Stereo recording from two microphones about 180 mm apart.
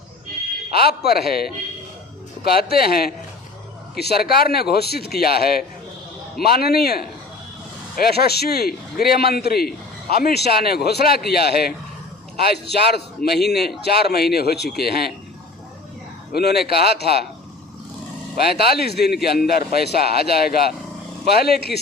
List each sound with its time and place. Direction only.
0.7 s a man's voice: 60° left (ahead or behind)
16.3 s a man's voice: 65° left (ahead or behind)
18.3 s a man's voice: 60° left (ahead or behind)